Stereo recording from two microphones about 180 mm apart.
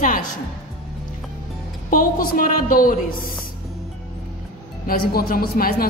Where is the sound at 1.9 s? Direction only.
50° left (ahead or behind).